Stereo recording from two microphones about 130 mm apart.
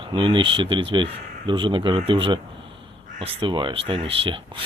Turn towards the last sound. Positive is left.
turn(degrees=-45)  # may be behind; listen again after turning